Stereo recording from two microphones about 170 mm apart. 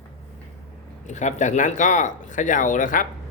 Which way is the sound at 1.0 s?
45° left (ahead or behind).